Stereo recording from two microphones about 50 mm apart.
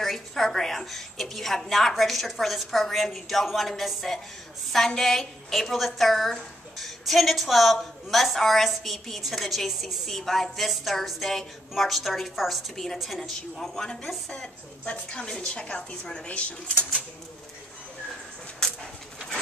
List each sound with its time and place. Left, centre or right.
0.0 s a woman's voice: centre; by 16.8 s left
18.6 s dog: centre